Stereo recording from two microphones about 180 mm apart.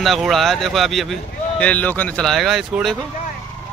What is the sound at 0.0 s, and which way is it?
Speech, centre (ahead or behind).